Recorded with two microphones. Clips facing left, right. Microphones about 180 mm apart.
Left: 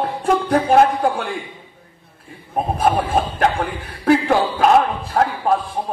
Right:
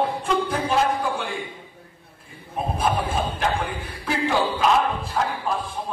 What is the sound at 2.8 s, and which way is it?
A woman's voice, 60° left (ahead or behind).